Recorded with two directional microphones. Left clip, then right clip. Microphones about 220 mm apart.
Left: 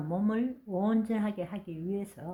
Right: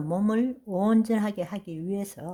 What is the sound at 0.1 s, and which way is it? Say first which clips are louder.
A woman's voice: right 5 dB; 40° right (ahead or behind).